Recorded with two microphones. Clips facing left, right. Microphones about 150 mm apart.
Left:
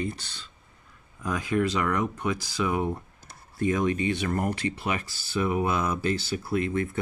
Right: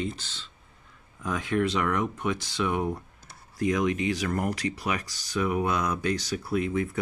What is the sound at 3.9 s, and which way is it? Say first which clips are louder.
Speech: left 1 dB; 90° right.